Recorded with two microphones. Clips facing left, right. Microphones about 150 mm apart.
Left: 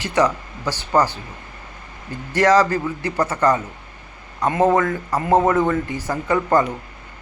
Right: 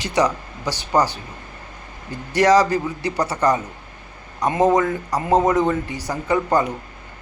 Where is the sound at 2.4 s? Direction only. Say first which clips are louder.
Even; 15° right (ahead or behind).